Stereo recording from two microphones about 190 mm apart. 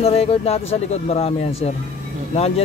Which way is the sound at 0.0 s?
30° left (ahead or behind).